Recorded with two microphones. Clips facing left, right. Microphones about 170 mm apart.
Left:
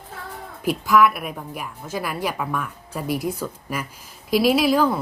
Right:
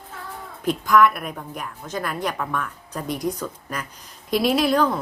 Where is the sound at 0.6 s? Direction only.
5° left (ahead or behind).